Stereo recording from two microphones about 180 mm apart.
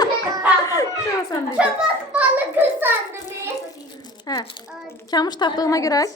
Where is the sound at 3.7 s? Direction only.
25° left (ahead or behind).